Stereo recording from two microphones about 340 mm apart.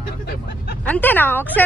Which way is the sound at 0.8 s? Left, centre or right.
Centre.